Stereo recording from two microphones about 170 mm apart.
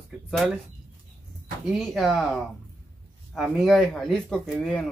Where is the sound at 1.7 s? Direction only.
Centre (ahead or behind).